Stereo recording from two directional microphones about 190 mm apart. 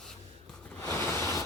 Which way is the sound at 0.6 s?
10° left (ahead or behind).